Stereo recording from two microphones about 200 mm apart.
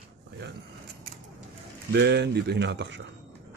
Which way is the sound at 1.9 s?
60° right (ahead or behind).